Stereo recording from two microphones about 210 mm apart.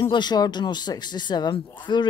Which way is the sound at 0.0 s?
20° left (ahead or behind).